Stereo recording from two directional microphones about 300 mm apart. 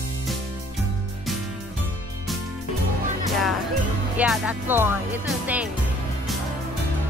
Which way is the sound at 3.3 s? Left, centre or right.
Centre.